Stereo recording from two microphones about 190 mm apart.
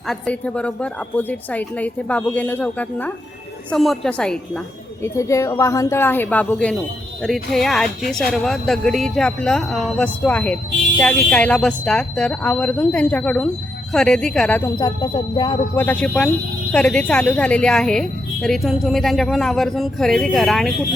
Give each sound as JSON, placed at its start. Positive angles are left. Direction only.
{"t": 0.1, "sound": "a woman's voice", "side_deg": 5}
{"t": 5.0, "sound": "a woman's voice", "side_deg": 15}
{"t": 14.8, "sound": "a sound", "side_deg": 25}
{"t": 15.7, "sound": "a woman's voice", "side_deg": 10}